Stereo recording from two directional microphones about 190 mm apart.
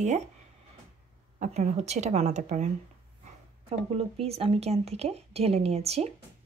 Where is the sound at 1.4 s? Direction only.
40° right (ahead or behind).